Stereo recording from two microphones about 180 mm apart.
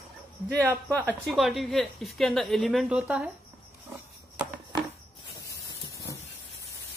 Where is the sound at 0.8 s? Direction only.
10° left (ahead or behind).